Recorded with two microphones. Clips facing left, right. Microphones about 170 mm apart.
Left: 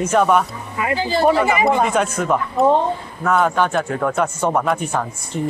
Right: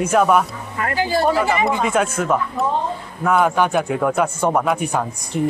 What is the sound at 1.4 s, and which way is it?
Speech, 5° left (ahead or behind).